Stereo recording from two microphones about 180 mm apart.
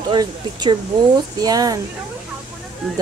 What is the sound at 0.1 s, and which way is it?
Speech, 25° right (ahead or behind).